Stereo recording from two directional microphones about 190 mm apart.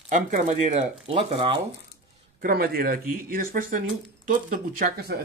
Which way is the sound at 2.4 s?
50° right (ahead or behind).